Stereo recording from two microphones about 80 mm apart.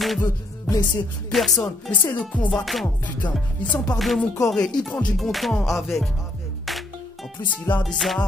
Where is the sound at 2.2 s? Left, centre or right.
Centre.